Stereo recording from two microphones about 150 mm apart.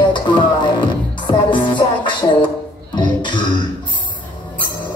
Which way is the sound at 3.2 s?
30° left (ahead or behind).